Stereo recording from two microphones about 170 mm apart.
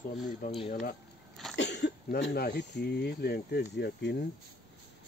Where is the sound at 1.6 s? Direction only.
85° left.